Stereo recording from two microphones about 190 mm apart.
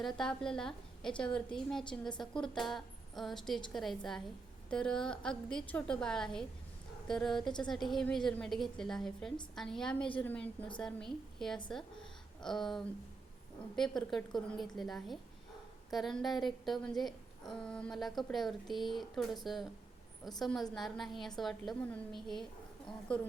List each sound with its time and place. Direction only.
0.0 s a woman's voice: 5° left (ahead or behind)
1.8 s a woman's voice: 25° left (ahead or behind)
2.3 s a woman's voice: centre (ahead or behind)